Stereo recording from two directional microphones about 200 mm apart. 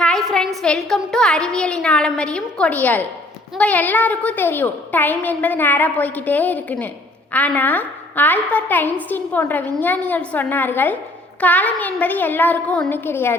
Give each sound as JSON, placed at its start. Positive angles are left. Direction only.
{"t": 0.0, "sound": "a woman's voice", "side_deg": 0}